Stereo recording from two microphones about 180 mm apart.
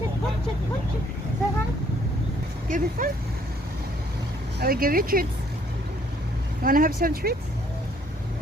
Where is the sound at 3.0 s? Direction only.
45° right (ahead or behind).